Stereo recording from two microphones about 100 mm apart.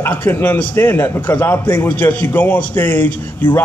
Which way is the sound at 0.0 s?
20° left (ahead or behind).